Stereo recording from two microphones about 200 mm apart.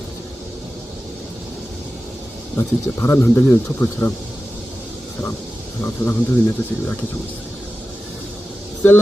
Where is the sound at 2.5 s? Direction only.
15° left (ahead or behind).